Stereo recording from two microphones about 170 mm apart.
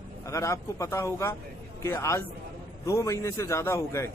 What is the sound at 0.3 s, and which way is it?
Speech, 20° left (ahead or behind).